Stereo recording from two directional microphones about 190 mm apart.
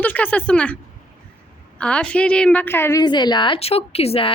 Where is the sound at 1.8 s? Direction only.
5° left (ahead or behind).